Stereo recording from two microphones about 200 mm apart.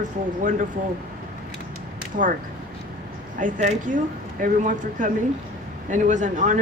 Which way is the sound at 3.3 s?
40° right (ahead or behind).